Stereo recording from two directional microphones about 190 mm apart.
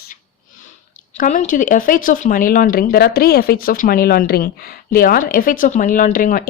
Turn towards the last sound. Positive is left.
turn(degrees=45)  # may be behind; listen again after turning